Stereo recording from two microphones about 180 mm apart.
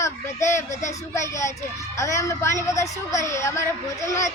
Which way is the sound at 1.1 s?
15° left (ahead or behind).